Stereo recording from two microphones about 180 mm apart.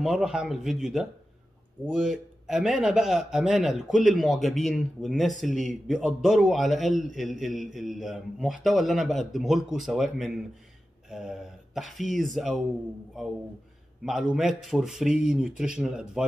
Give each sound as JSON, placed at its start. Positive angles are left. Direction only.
{"t": 0.0, "sound": "a man's voice", "side_deg": -5}